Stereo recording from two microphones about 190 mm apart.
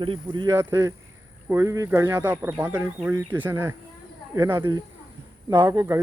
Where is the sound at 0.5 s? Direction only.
15° right (ahead or behind).